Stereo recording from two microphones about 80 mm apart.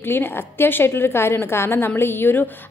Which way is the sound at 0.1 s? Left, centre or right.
Left.